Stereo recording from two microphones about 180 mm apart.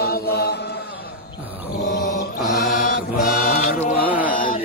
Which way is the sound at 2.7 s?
50° left (ahead or behind).